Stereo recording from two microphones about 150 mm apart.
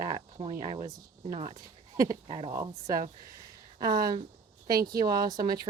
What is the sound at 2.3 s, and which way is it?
Speech, 40° right (ahead or behind).